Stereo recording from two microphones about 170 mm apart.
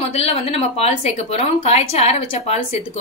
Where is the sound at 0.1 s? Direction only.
35° left (ahead or behind).